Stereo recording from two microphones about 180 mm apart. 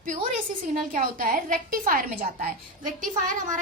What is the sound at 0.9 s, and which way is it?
A woman's voice, 50° right (ahead or behind).